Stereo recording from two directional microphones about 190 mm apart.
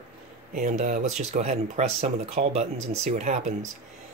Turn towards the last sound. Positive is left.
turn(degrees=-40)  # may be behind; listen again after turning